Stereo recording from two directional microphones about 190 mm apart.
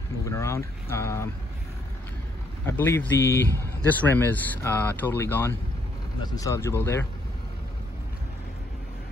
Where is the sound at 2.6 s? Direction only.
10° left (ahead or behind).